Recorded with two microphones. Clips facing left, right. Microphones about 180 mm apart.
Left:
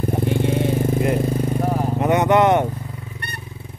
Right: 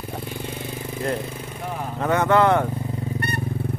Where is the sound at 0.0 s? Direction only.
50° left (ahead or behind).